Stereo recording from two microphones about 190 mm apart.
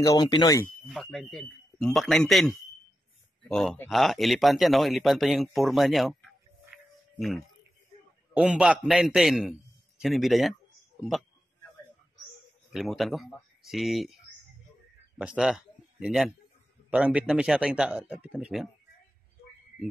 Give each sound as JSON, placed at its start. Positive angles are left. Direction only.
{"t": 0.0, "sound": "speech", "side_deg": 15}
{"t": 0.8, "sound": "speech", "side_deg": 0}
{"t": 8.4, "sound": "speech", "side_deg": -5}
{"t": 12.7, "sound": "speech", "side_deg": 0}
{"t": 15.1, "sound": "a man's voice", "side_deg": -5}